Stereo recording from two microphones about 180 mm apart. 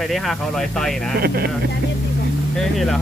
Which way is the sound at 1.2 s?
60° right (ahead or behind).